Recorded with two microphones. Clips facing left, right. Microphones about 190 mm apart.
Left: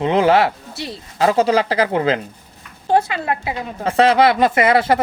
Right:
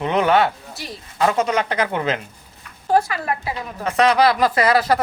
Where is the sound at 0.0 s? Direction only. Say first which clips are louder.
Left 3 dB; 30° left (ahead or behind).